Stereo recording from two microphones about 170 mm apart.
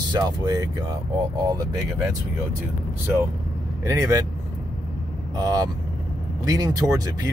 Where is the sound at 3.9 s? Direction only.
20° right (ahead or behind).